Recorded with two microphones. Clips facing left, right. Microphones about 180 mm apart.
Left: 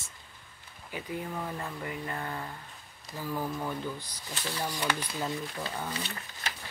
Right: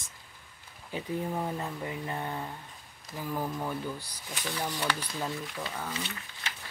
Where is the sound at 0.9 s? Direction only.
25° right (ahead or behind).